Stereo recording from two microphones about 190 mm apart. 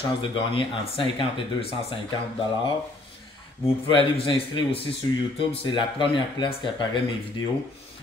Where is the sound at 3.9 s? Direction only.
25° left (ahead or behind).